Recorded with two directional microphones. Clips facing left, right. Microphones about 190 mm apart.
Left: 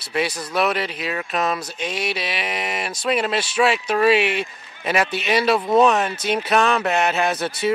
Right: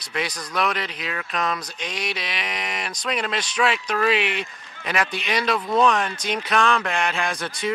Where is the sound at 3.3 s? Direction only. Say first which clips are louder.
Left 4 dB; 5° left (ahead or behind).